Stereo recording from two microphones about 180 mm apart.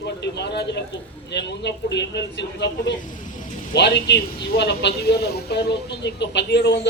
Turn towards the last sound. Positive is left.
turn(degrees=70)  # may be behind; listen again after turning